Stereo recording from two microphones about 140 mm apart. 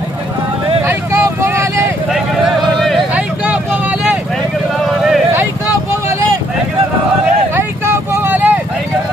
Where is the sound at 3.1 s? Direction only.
10° right (ahead or behind).